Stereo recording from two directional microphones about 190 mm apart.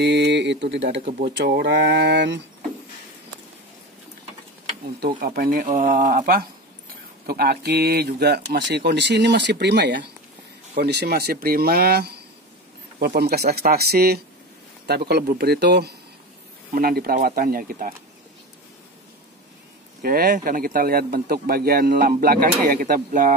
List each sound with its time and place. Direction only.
0.0 s speech: 65° right (ahead or behind)
5.2 s a man's voice: 50° right (ahead or behind)
20.0 s a man's voice: 50° right (ahead or behind)